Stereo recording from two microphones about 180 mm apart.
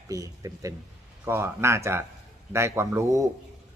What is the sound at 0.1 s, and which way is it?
A man's voice, 20° right (ahead or behind).